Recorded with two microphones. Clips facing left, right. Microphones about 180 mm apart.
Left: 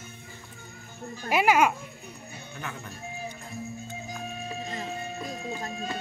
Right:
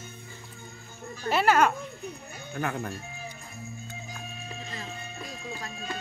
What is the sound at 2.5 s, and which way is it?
Speech, 55° right (ahead or behind).